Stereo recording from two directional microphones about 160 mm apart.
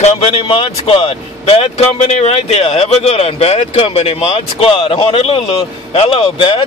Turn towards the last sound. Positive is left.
turn(degrees=35)  # may be behind; listen again after turning